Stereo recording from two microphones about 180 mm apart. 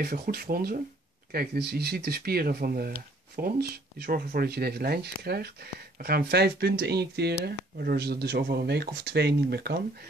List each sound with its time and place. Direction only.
0.0 s speech: 60° right (ahead or behind)